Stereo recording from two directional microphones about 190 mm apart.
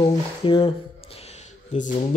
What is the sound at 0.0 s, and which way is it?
Speech, 30° left (ahead or behind).